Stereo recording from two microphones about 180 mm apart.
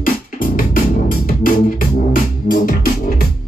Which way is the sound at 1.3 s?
50° left (ahead or behind).